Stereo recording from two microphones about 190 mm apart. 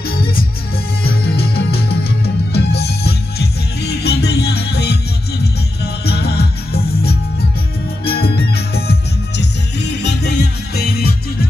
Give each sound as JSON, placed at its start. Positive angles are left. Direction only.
{"t": 1.2, "sound": "music", "side_deg": 60}
{"t": 2.5, "sound": "music", "side_deg": 60}
{"t": 6.0, "sound": "music", "side_deg": 60}